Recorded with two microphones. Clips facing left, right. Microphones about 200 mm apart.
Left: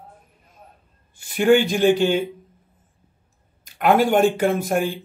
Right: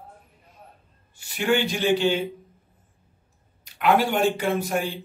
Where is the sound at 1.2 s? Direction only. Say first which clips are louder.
Left 7 dB; 50° left (ahead or behind).